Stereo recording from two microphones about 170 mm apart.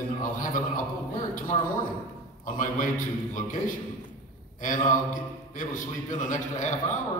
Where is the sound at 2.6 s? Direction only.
50° left (ahead or behind).